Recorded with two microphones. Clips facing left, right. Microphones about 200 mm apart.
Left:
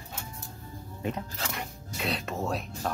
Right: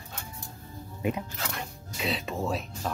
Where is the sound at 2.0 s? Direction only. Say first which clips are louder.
Right 1 dB; centre (ahead or behind).